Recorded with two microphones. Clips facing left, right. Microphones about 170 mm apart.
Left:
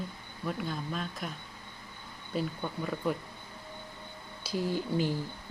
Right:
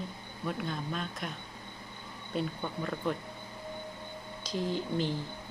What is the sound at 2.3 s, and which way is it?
Speech, 5° left (ahead or behind).